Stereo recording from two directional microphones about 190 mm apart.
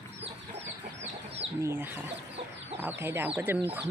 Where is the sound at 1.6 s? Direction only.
10° right (ahead or behind).